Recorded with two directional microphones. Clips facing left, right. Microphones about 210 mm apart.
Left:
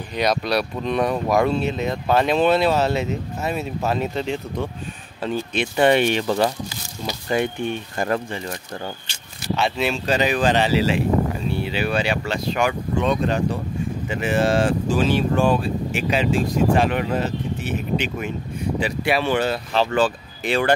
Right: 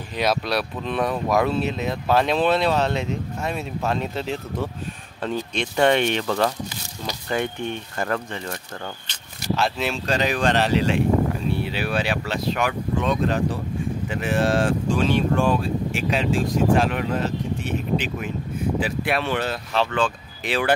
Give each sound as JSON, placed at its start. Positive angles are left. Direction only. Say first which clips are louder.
{"t": 0.1, "sound": "speech", "louder": "left 2 dB", "side_deg": 0}
{"t": 7.6, "sound": "speech", "louder": "left 3 dB", "side_deg": 10}
{"t": 9.0, "sound": "speech", "louder": "right 1 dB", "side_deg": 5}